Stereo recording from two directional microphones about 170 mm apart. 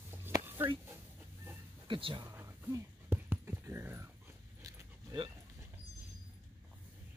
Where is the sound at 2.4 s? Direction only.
15° right (ahead or behind).